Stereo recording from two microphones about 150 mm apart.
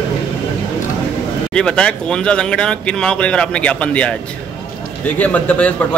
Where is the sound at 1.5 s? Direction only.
5° left (ahead or behind).